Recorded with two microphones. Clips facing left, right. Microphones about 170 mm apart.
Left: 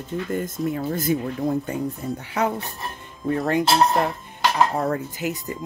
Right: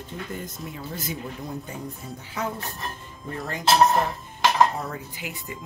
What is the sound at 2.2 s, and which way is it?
Speech, 70° left (ahead or behind).